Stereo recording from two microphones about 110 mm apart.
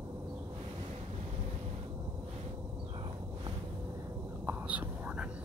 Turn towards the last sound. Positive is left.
turn(degrees=-10)  # may be behind; listen again after turning